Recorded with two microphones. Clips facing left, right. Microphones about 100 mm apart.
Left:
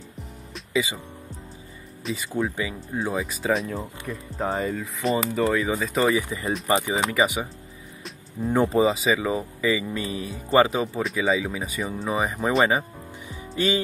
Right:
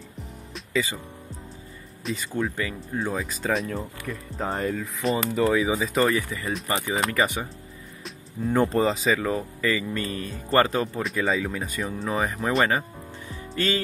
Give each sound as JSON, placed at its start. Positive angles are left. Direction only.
{"t": 0.7, "sound": "speech", "side_deg": 15}
{"t": 2.0, "sound": "speech", "side_deg": 5}
{"t": 6.0, "sound": "speech", "side_deg": 15}
{"t": 8.6, "sound": "speech", "side_deg": 5}